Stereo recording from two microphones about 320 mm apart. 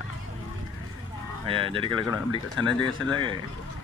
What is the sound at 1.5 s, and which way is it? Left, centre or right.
Speech, centre.